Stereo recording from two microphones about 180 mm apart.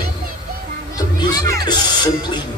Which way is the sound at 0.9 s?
20° left (ahead or behind).